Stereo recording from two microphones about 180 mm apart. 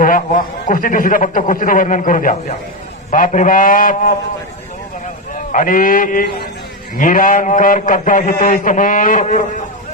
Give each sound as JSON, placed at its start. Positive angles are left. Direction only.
{"t": 0.0, "sound": "a man's voice", "side_deg": 50}
{"t": 5.5, "sound": "a man's voice", "side_deg": 50}